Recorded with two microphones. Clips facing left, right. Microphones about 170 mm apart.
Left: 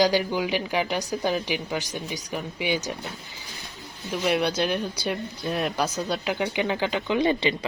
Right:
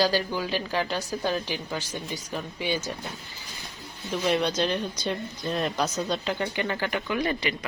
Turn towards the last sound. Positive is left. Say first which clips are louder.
# left 5 dB
turn(degrees=25)  # may be behind; listen again after turning